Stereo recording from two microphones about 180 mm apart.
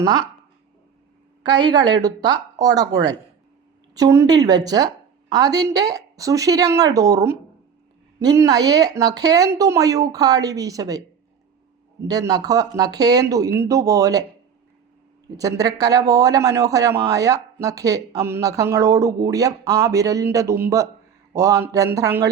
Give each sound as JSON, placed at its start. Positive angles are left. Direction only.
{"t": 1.5, "sound": "speech", "side_deg": -25}
{"t": 15.4, "sound": "speech", "side_deg": -20}